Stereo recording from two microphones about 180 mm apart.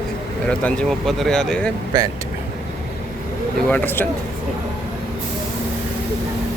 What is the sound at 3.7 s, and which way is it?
Speech, 10° left (ahead or behind).